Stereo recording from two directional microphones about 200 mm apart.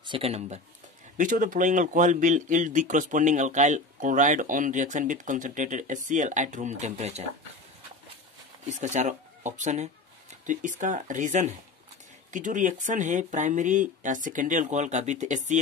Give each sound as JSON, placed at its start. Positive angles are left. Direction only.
{"t": 0.0, "sound": "speech", "side_deg": -25}
{"t": 1.1, "sound": "speech", "side_deg": -40}
{"t": 8.6, "sound": "speech", "side_deg": -35}